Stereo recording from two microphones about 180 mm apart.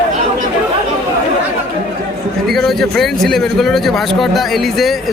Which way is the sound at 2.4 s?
Centre (ahead or behind).